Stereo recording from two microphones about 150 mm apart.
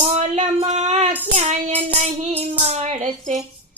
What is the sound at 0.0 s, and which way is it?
Female singing, 45° right (ahead or behind).